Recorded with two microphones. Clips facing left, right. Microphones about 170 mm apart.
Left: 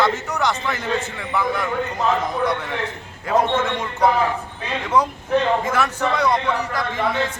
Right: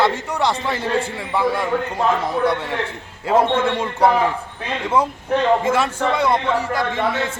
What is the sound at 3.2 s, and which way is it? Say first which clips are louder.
Speech: right 2 dB; 30° right (ahead or behind).